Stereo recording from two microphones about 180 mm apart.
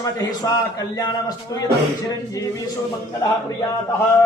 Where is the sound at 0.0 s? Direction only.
20° left (ahead or behind).